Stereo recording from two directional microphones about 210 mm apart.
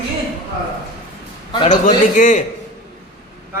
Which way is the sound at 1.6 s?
35° left (ahead or behind).